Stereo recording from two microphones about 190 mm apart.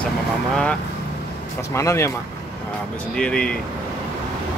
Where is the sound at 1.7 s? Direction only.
15° left (ahead or behind).